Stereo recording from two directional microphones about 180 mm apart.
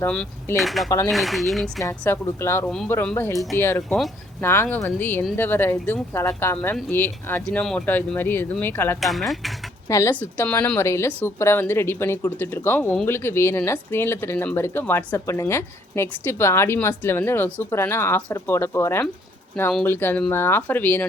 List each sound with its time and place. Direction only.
0.0 s speech: 10° left (ahead or behind)
0.9 s speech: 15° left (ahead or behind)
1.1 s speech: centre (ahead or behind)
1.8 s speech: 15° left (ahead or behind)
9.0 s speech: centre (ahead or behind)
9.9 s speech: 15° left (ahead or behind)